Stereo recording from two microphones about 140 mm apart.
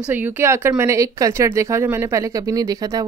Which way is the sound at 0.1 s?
15° right (ahead or behind).